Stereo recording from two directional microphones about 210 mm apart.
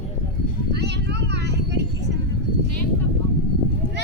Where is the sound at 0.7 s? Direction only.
55° right (ahead or behind).